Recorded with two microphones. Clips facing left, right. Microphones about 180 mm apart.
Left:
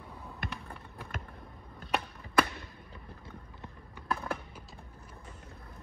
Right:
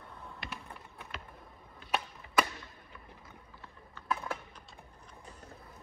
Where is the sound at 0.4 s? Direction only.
50° left (ahead or behind).